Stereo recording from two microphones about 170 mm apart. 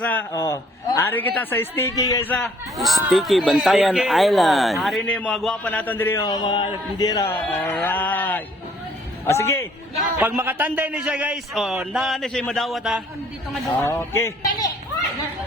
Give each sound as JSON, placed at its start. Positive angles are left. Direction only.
{"t": 0.0, "sound": "a man's voice", "side_deg": 10}
{"t": 6.2, "sound": "speech", "side_deg": 25}
{"t": 7.5, "sound": "a sound", "side_deg": 10}
{"t": 9.2, "sound": "music", "side_deg": 15}
{"t": 10.2, "sound": "a man's voice", "side_deg": -10}
{"t": 13.7, "sound": "a man's voice", "side_deg": 15}